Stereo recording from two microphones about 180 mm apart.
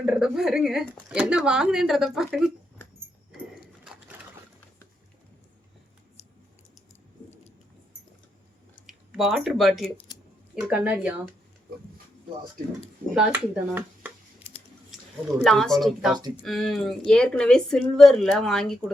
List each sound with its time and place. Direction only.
0.0 s speech: 5° right (ahead or behind)
6.2 s a sound: 35° left (ahead or behind)
8.9 s speech: centre (ahead or behind)
13.1 s speech: 5° right (ahead or behind)
15.4 s speech: centre (ahead or behind)